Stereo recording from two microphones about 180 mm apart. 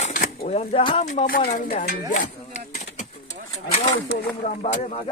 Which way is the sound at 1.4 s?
45° left (ahead or behind).